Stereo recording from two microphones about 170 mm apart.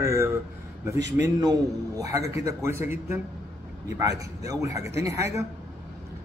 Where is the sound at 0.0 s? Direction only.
15° right (ahead or behind).